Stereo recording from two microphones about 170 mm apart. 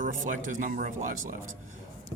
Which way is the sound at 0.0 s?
50° right (ahead or behind).